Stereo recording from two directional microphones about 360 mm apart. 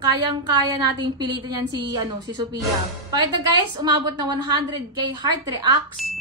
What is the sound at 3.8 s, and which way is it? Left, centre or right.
Speech, centre.